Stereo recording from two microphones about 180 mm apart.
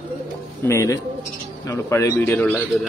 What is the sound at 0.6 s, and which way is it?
A man's voice, 15° left (ahead or behind).